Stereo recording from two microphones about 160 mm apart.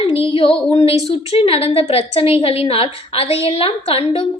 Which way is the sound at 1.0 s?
40° left (ahead or behind).